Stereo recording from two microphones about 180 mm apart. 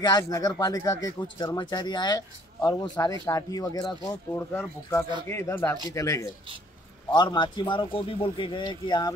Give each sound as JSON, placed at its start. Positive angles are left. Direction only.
{"t": 0.0, "sound": "speech", "side_deg": 20}